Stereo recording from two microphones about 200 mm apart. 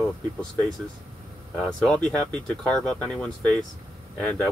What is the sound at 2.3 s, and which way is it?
Speech, 5° left (ahead or behind).